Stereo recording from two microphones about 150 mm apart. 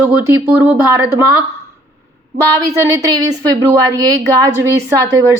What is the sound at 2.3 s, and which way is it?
A woman's voice, 20° right (ahead or behind).